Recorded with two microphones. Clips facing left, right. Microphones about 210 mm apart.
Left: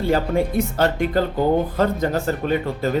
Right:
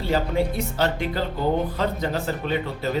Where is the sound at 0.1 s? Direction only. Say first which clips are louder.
Left 2 dB; 50° left (ahead or behind).